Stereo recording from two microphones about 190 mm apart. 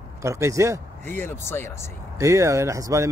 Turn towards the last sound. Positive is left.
turn(degrees=-15)  # may be behind; listen again after turning